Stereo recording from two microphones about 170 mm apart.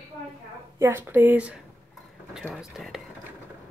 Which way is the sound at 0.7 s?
15° right (ahead or behind).